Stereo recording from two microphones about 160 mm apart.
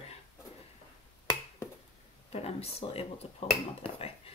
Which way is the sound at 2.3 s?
40° left (ahead or behind).